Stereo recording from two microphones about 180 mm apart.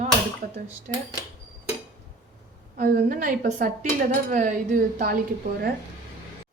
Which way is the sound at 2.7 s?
50° right (ahead or behind).